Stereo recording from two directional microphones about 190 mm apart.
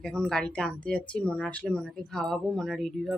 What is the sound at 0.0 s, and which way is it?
A woman's voice, 5° left (ahead or behind).